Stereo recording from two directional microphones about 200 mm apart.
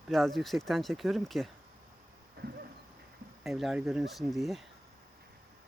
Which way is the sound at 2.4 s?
50° right (ahead or behind).